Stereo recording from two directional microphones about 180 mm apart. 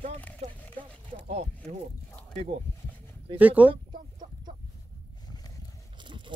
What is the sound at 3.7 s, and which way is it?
Chicken, 25° right (ahead or behind).